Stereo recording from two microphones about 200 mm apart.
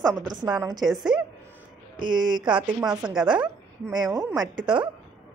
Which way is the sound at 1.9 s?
20° right (ahead or behind).